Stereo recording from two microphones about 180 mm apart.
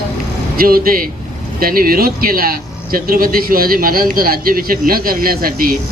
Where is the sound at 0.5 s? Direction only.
55° right (ahead or behind).